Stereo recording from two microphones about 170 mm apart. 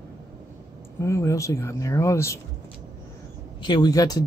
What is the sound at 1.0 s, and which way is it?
Speech, 15° left (ahead or behind).